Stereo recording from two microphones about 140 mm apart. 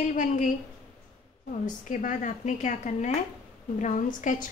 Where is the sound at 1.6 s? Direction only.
65° left (ahead or behind).